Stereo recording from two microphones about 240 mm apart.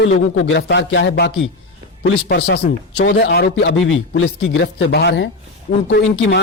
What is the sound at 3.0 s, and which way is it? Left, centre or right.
A man's voice, left.